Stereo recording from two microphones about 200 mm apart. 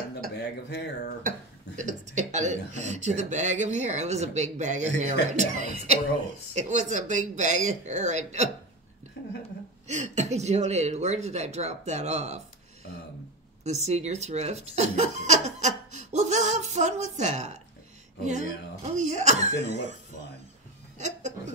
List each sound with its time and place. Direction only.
0.3 s speech: 60° left (ahead or behind)
1.8 s speech: 40° right (ahead or behind)
9.8 s speech: 35° right (ahead or behind)
13.7 s speech: 35° right (ahead or behind)